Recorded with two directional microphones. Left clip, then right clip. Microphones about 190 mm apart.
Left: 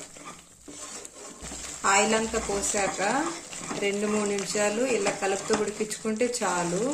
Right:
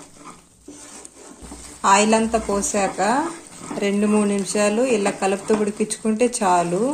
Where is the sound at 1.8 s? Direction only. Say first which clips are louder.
Right 7 dB; 35° right (ahead or behind).